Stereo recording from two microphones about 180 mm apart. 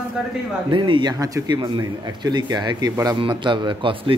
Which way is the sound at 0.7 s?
25° right (ahead or behind).